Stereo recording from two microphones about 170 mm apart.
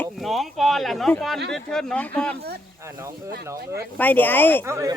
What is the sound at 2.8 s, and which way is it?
Speech, 15° right (ahead or behind).